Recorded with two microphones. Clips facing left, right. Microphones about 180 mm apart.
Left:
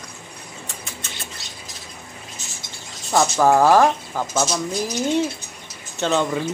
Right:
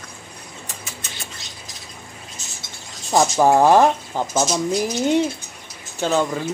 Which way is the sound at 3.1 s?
15° right (ahead or behind).